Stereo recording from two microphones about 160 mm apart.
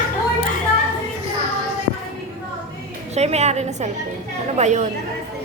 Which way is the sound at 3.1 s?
40° right (ahead or behind).